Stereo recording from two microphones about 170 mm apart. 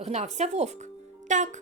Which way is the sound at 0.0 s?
40° right (ahead or behind).